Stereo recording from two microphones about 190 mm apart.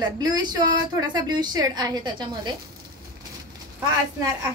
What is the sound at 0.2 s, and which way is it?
A woman's voice, 20° right (ahead or behind).